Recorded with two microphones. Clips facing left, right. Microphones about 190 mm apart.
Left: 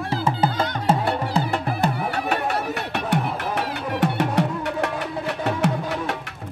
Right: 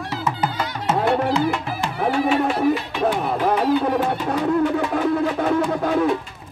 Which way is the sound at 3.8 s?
75° left (ahead or behind).